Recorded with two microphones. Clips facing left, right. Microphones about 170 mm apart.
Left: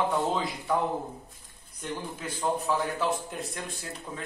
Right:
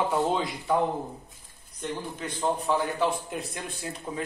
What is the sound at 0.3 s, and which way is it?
Speech, centre (ahead or behind).